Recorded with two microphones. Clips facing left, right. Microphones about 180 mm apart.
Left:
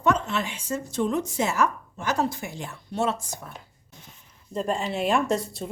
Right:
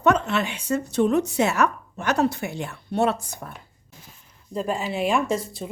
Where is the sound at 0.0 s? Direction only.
65° right (ahead or behind).